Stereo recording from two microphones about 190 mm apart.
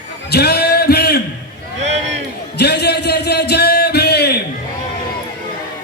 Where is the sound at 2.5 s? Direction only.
60° left (ahead or behind).